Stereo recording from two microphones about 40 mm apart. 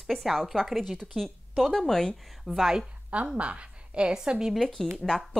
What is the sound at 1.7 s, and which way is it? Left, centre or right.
Speech, centre.